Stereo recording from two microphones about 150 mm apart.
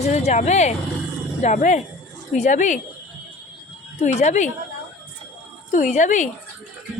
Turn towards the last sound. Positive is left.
turn(degrees=55)  # may be behind; listen again after turning